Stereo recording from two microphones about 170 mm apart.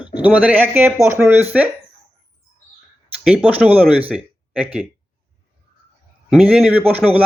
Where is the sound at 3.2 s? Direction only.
10° right (ahead or behind).